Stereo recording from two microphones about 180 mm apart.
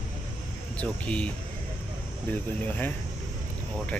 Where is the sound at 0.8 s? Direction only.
5° left (ahead or behind).